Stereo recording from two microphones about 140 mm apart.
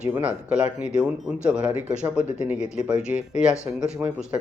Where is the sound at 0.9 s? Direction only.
5° right (ahead or behind).